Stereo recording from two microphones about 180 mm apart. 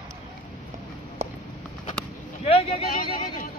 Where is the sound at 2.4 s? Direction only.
35° left (ahead or behind).